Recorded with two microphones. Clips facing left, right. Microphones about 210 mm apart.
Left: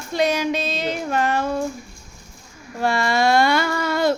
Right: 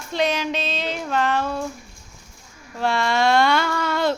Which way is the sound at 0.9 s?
10° left (ahead or behind).